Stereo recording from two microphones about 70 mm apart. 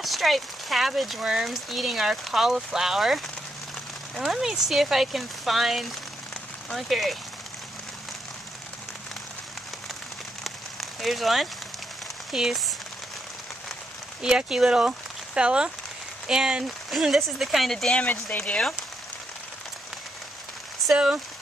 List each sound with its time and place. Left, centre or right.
0.0 s speech: centre
10.4 s rain on surface: centre
12.3 s speech: centre
14.2 s speech: centre
18.3 s speech: centre
20.8 s speech: centre